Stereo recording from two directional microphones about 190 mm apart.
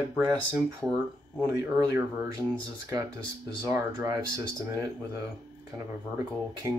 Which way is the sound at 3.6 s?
15° right (ahead or behind).